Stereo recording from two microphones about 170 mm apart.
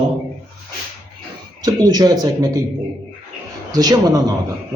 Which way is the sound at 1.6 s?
25° right (ahead or behind).